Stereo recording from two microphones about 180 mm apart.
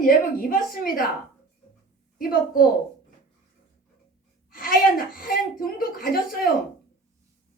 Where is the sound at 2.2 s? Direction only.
55° left (ahead or behind).